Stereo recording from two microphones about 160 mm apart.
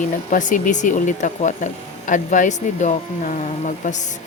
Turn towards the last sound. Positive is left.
turn(degrees=50)  # may be behind; listen again after turning